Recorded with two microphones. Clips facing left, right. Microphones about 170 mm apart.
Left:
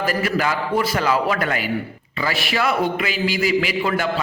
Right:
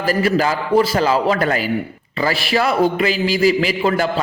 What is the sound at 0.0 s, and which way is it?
A man's voice, 30° right (ahead or behind).